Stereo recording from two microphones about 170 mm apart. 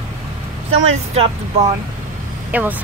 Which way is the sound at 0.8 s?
35° right (ahead or behind).